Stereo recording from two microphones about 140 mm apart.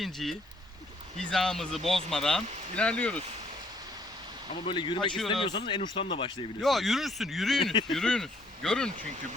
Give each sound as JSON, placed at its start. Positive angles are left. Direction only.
{"t": 0.0, "sound": "speech", "side_deg": 0}
{"t": 4.6, "sound": "speech", "side_deg": 35}
{"t": 6.6, "sound": "speech", "side_deg": 0}
{"t": 7.6, "sound": "speech", "side_deg": 35}
{"t": 7.9, "sound": "speech", "side_deg": 5}